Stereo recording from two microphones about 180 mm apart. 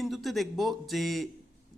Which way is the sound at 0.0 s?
Centre (ahead or behind).